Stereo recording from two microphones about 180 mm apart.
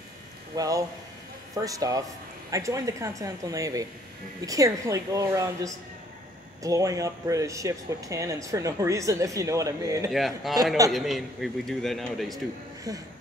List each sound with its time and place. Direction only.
0.6 s speech: 20° right (ahead or behind)
10.1 s a man's voice: centre (ahead or behind)
12.9 s speech: 20° right (ahead or behind)